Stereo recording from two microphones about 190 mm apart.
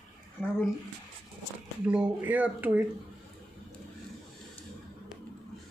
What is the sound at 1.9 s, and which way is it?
Speech, 10° right (ahead or behind).